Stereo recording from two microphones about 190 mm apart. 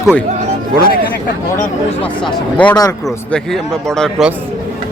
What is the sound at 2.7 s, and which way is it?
Speech, 20° left (ahead or behind).